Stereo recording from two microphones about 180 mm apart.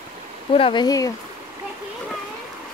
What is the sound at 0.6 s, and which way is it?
Speech, 25° left (ahead or behind).